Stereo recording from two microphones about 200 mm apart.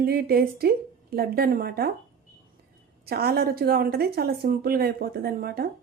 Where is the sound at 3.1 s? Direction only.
50° right (ahead or behind).